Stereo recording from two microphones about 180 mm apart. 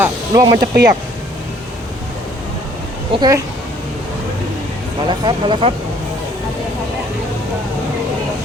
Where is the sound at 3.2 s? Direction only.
20° right (ahead or behind).